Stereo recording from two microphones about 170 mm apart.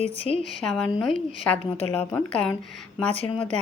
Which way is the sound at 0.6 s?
5° left (ahead or behind).